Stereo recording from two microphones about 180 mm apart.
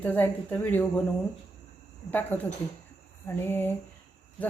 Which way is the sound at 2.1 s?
10° left (ahead or behind).